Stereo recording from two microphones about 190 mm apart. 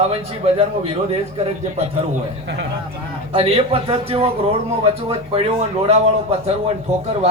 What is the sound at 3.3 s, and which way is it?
A man's voice, 30° right (ahead or behind).